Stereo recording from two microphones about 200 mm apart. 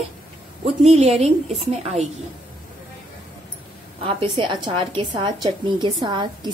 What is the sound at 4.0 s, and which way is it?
A woman's voice, 25° right (ahead or behind).